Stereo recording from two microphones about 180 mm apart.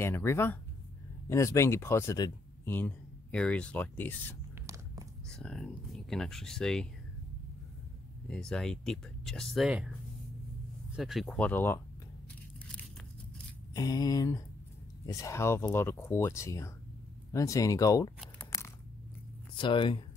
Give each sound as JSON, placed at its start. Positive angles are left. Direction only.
{"t": 0.0, "sound": "speech", "side_deg": 15}
{"t": 8.3, "sound": "speech", "side_deg": 5}
{"t": 11.0, "sound": "speech", "side_deg": 0}
{"t": 13.7, "sound": "speech", "side_deg": 20}
{"t": 18.4, "sound": "crunch", "side_deg": 15}
{"t": 19.5, "sound": "speech", "side_deg": 25}